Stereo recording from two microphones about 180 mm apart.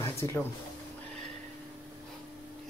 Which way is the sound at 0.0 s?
15° left (ahead or behind).